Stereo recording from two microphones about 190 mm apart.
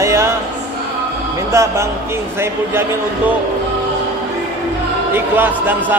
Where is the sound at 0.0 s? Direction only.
15° right (ahead or behind).